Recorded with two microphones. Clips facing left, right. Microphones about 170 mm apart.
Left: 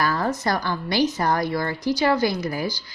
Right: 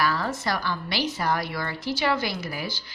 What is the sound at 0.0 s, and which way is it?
A woman's voice, 45° left (ahead or behind).